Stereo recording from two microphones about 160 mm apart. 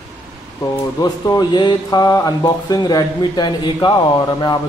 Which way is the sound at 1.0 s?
25° left (ahead or behind).